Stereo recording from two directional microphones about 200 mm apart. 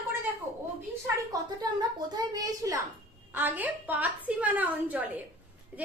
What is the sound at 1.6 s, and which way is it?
A woman's voice, 20° right (ahead or behind).